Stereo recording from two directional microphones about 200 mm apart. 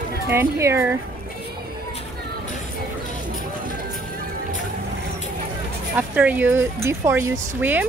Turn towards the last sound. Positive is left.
turn(degrees=-10)  # may be behind; listen again after turning